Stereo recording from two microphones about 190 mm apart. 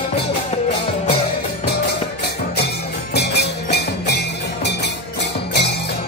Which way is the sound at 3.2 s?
60° left (ahead or behind).